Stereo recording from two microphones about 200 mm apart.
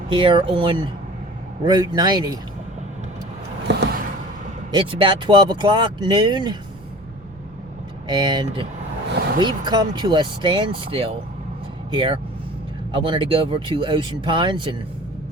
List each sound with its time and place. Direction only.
0.1 s speech: 25° right (ahead or behind)
3.7 s vehicle: 60° right (ahead or behind)
4.7 s speech: 25° right (ahead or behind)
8.0 s speech: 20° right (ahead or behind)